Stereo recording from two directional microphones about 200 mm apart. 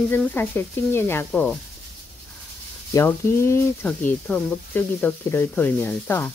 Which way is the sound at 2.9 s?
15° left (ahead or behind).